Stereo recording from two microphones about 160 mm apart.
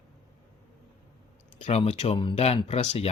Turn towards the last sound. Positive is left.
turn(degrees=40)  # may be behind; listen again after turning